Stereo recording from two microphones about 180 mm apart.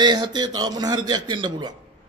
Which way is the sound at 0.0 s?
25° right (ahead or behind).